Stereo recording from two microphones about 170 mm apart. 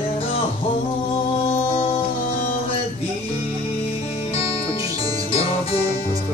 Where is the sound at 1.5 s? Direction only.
35° left (ahead or behind).